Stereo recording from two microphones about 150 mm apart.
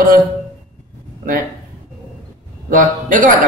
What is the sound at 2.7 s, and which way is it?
Speech, 65° right (ahead or behind).